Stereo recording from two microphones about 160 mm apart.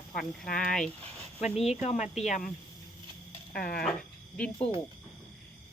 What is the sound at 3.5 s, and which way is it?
Speech, 75° left (ahead or behind).